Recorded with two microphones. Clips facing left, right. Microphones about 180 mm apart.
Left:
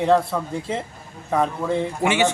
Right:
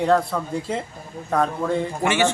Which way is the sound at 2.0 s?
15° left (ahead or behind).